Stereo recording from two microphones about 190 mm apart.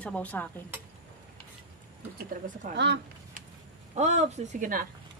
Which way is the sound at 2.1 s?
45° right (ahead or behind).